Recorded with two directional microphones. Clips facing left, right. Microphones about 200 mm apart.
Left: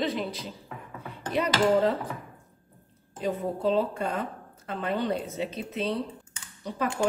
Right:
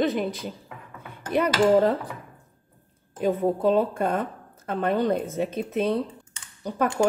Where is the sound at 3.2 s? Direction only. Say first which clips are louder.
Right 6 dB; 55° right (ahead or behind).